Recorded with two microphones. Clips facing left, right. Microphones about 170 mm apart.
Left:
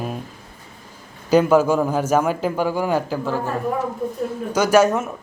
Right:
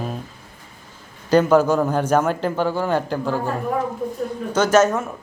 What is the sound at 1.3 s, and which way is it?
A man's voice, 10° left (ahead or behind).